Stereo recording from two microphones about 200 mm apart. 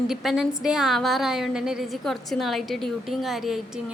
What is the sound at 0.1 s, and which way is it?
A woman's voice, centre (ahead or behind).